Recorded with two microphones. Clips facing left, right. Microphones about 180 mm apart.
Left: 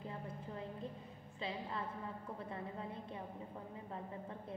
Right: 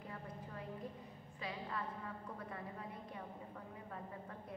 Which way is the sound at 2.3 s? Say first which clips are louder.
Left 3 dB; 25° left (ahead or behind).